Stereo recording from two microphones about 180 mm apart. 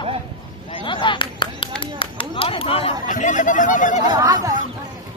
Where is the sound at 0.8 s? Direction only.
25° left (ahead or behind).